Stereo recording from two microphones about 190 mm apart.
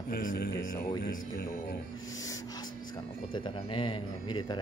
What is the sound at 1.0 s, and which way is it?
Speech, 55° left (ahead or behind).